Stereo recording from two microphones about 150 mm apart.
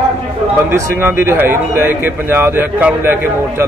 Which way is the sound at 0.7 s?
15° right (ahead or behind).